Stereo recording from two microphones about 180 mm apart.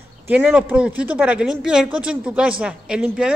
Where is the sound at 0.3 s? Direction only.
10° right (ahead or behind).